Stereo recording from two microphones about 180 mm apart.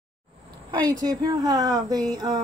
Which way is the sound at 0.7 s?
20° right (ahead or behind).